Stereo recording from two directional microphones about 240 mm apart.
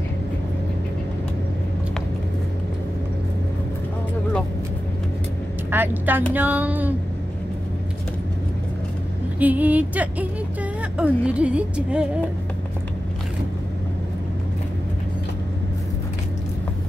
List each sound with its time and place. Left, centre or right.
5.7 s vehicle: centre
6.3 s speech: centre
9.4 s a woman's voice: centre